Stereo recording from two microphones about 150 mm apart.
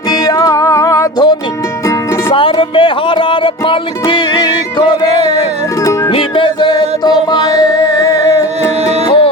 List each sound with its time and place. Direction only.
0.1 s music: 25° left (ahead or behind)
2.3 s music: 35° left (ahead or behind)
5.0 s a sound: 45° right (ahead or behind)
6.1 s music: 35° left (ahead or behind)